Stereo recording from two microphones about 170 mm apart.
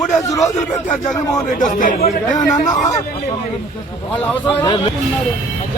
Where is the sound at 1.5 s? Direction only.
50° left (ahead or behind).